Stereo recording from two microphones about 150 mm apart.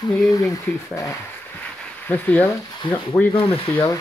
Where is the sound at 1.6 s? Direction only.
10° left (ahead or behind).